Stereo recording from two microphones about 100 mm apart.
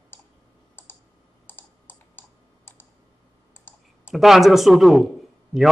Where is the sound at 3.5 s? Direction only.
20° left (ahead or behind).